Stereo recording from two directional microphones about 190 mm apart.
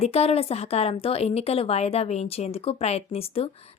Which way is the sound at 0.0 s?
35° left (ahead or behind).